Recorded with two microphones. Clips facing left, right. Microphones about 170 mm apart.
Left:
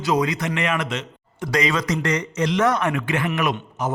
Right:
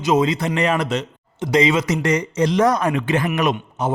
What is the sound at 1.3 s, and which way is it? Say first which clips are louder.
A man's voice: right 5 dB; 25° right (ahead or behind).